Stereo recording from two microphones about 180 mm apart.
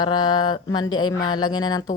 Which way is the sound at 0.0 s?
25° left (ahead or behind).